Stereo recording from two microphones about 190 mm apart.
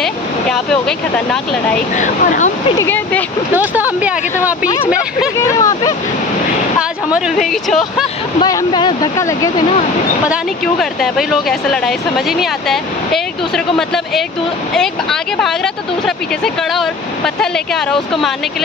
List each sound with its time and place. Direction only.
0.0 s speech: 5° left (ahead or behind)
2.0 s speech: 40° left (ahead or behind)
2.8 s speech: 10° left (ahead or behind)
3.5 s speech: 10° right (ahead or behind)
5.4 s speech: 15° left (ahead or behind)
6.8 s speech: 5° right (ahead or behind)
8.4 s speech: 20° left (ahead or behind)
10.2 s speech: centre (ahead or behind)